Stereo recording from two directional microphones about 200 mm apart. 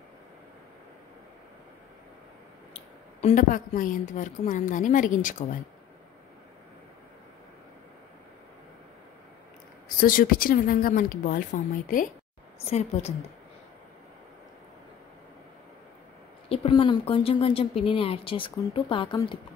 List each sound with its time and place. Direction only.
2.7 s a woman's voice: 30° left (ahead or behind)
9.9 s a woman's voice: 45° left (ahead or behind)
16.4 s speech: 30° left (ahead or behind)